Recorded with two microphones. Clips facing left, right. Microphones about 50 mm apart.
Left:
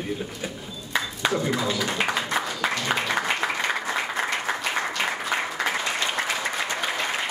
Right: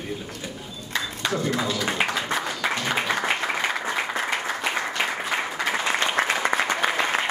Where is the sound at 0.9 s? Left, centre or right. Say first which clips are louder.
Left 2 dB; centre.